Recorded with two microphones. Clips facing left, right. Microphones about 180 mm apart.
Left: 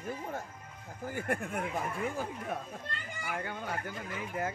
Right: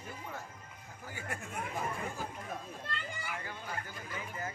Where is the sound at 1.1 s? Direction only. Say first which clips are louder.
Left 8 dB; 55° left (ahead or behind).